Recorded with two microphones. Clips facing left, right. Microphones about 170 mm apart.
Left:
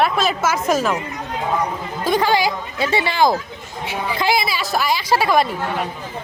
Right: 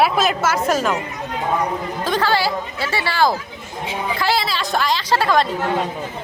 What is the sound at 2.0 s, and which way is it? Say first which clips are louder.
Speech: left 3 dB; 15° left (ahead or behind).